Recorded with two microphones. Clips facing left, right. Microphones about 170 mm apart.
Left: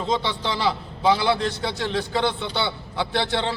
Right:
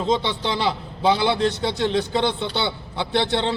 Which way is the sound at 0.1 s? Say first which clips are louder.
Right 2 dB; 20° right (ahead or behind).